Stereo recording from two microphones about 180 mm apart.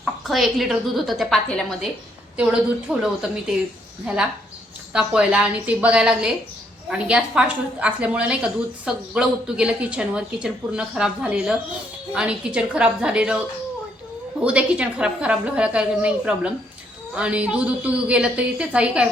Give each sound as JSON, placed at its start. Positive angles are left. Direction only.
{"t": 0.0, "sound": "a woman's voice", "side_deg": 0}
{"t": 14.4, "sound": "a woman's voice", "side_deg": -5}